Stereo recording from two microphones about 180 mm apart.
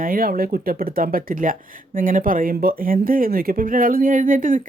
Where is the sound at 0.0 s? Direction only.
55° right (ahead or behind).